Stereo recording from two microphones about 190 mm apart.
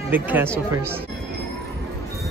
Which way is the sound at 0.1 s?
10° right (ahead or behind).